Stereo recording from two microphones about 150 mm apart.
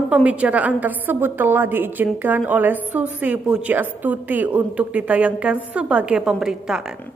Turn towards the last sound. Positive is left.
turn(degrees=-5)  # may be behind; listen again after turning